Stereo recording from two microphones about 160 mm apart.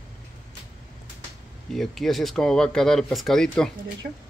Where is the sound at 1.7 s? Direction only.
Centre (ahead or behind).